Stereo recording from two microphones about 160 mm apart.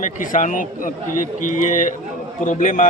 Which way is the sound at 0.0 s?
55° left (ahead or behind).